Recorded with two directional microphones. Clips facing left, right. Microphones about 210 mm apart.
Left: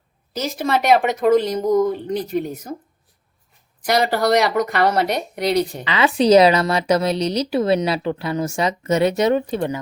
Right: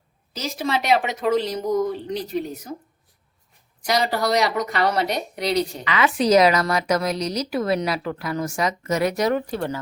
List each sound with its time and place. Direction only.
0.3 s a woman's voice: 50° left (ahead or behind)
3.8 s a woman's voice: 55° left (ahead or behind)
5.8 s a woman's voice: 30° left (ahead or behind)